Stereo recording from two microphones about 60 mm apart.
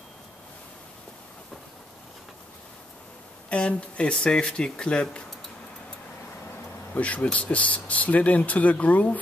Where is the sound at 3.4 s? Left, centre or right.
Left.